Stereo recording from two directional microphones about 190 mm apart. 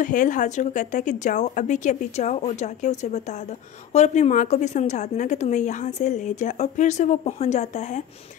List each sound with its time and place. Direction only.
0.0 s a woman's voice: 45° left (ahead or behind)